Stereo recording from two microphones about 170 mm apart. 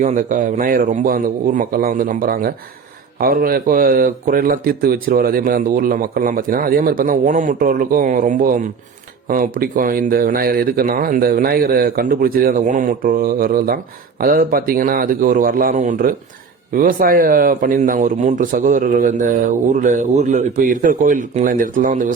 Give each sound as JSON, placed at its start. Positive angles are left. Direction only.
{"t": 0.0, "sound": "a man's voice", "side_deg": -50}